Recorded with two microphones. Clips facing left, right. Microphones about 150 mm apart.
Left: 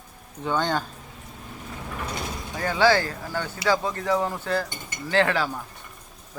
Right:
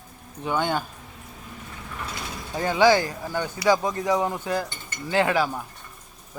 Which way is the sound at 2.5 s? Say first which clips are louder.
Right 2 dB; 20° right (ahead or behind).